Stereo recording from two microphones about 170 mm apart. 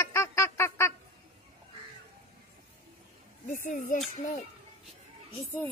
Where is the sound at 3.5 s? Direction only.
50° left (ahead or behind).